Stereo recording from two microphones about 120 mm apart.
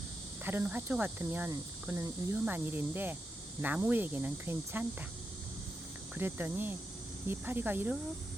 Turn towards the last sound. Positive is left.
turn(degrees=-15)  # may be behind; listen again after turning